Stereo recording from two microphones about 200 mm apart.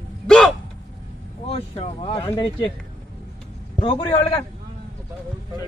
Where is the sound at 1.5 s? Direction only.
30° left (ahead or behind).